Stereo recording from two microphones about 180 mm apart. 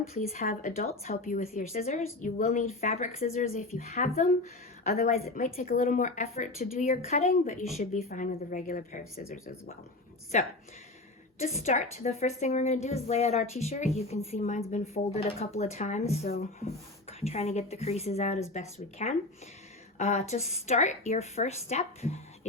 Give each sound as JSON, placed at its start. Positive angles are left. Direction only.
{"t": 0.2, "sound": "a woman's voice", "side_deg": 50}
{"t": 10.3, "sound": "a woman's voice", "side_deg": 40}